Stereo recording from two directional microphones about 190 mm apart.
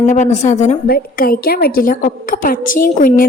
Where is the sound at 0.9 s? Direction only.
50° left (ahead or behind).